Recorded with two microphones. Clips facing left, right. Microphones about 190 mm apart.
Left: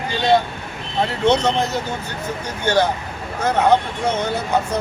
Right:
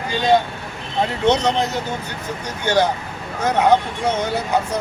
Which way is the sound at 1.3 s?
15° right (ahead or behind).